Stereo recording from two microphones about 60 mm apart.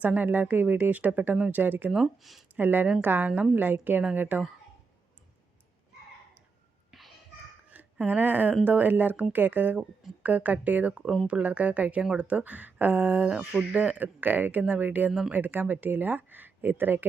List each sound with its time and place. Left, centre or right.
0.0 s speech: right
1.9 s speech: centre
2.6 s speech: right
6.9 s babbling: centre
7.7 s speech: right